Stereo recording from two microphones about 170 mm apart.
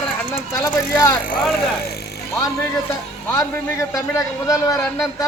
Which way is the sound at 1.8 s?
70° left (ahead or behind).